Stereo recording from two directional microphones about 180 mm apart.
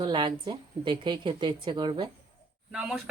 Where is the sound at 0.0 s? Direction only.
25° right (ahead or behind).